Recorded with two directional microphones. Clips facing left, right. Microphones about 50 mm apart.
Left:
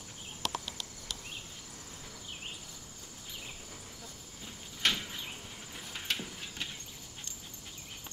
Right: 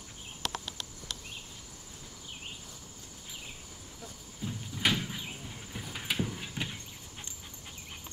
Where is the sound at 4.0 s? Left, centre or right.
Centre.